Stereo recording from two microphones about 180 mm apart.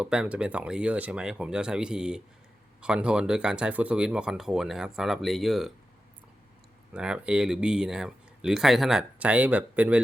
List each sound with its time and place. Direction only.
0.0 s speech: 5° right (ahead or behind)
6.9 s speech: 5° right (ahead or behind)